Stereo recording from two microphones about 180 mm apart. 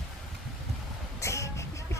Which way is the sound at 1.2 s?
15° left (ahead or behind).